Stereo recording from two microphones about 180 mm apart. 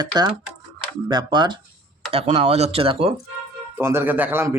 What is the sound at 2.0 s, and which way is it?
Speech, 35° right (ahead or behind).